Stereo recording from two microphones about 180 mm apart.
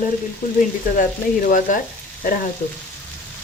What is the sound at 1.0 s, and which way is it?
Speech, 45° left (ahead or behind).